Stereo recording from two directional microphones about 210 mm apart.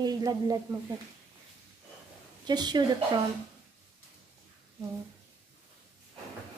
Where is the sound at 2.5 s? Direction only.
20° right (ahead or behind).